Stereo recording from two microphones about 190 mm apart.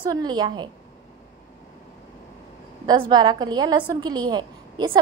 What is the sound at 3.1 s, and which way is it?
A woman's voice, 20° right (ahead or behind).